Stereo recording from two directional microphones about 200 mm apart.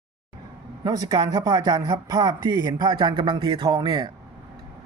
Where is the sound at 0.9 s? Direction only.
20° right (ahead or behind).